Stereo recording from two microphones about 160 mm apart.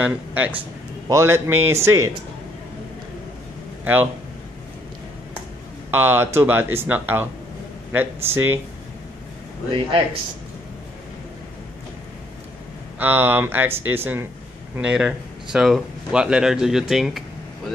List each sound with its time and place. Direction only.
0.0 s speech: 10° right (ahead or behind)
3.8 s speech: 10° right (ahead or behind)
5.9 s speech: 15° right (ahead or behind)
9.7 s speech: 30° right (ahead or behind)
13.0 s speech: 15° right (ahead or behind)